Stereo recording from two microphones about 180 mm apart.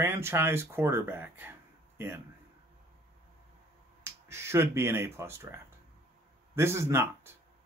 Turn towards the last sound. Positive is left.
turn(degrees=-15)  # may be behind; listen again after turning